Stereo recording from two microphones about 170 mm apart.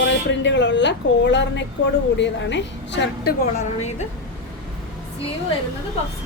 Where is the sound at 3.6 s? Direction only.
40° left (ahead or behind).